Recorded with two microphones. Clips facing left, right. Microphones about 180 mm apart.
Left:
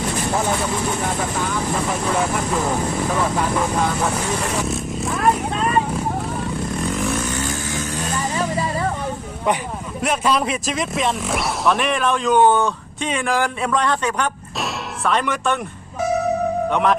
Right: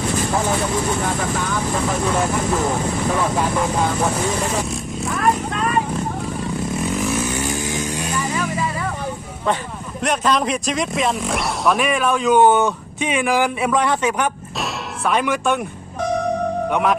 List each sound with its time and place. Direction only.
4.6 s vehicle: centre (ahead or behind)
6.8 s vehicle: centre (ahead or behind)
8.4 s music: 35° left (ahead or behind)
10.0 s speech: 5° left (ahead or behind); by 14.3 s 10° right (ahead or behind)
14.6 s music: 5° right (ahead or behind)
16.0 s music: 5° left (ahead or behind)
16.6 s speech: 5° right (ahead or behind)